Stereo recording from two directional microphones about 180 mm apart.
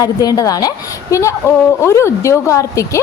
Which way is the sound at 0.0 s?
20° left (ahead or behind).